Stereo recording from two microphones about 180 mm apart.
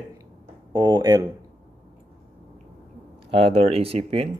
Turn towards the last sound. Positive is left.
turn(degrees=-35)  # may be behind; listen again after turning